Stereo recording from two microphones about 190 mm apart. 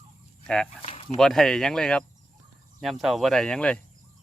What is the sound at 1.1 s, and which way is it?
Speech, centre (ahead or behind).